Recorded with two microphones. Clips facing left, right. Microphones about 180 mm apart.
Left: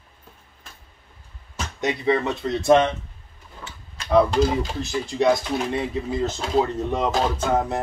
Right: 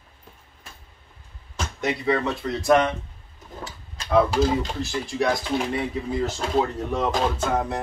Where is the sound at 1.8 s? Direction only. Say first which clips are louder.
Left 2 dB; 20° left (ahead or behind).